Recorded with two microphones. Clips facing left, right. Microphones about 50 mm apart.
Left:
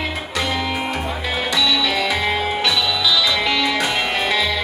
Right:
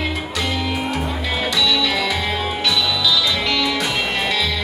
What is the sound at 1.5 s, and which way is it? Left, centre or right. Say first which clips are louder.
Music: left 1 dB; centre.